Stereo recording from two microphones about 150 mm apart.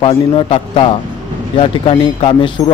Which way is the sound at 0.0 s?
35° left (ahead or behind).